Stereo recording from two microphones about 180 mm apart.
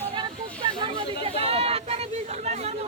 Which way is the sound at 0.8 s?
30° right (ahead or behind).